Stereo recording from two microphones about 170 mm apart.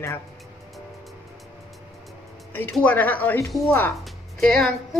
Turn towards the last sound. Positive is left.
turn(degrees=0)  # may be behind; listen again after turning